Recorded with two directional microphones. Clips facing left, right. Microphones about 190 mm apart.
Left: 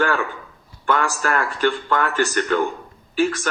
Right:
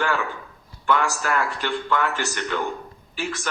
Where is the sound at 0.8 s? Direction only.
50° left (ahead or behind).